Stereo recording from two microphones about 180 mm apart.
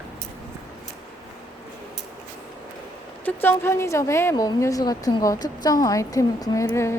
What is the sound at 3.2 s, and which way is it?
A woman's voice, 10° left (ahead or behind).